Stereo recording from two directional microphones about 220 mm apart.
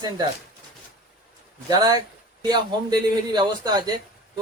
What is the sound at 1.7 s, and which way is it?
A man's voice, 20° right (ahead or behind).